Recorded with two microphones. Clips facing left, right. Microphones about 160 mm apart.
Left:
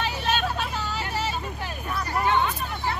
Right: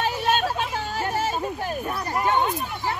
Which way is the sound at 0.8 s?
45° right (ahead or behind).